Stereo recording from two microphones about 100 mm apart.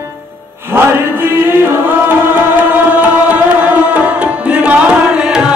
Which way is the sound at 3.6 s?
15° right (ahead or behind).